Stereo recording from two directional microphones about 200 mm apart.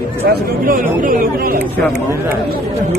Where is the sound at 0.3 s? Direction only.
45° right (ahead or behind).